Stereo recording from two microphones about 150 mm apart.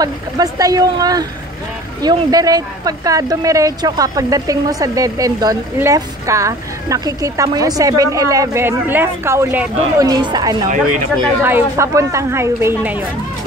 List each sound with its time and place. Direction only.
0.0 s speech: 25° right (ahead or behind)
9.9 s speech: 25° right (ahead or behind)